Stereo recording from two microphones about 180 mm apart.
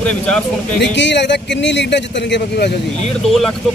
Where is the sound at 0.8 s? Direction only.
75° left (ahead or behind).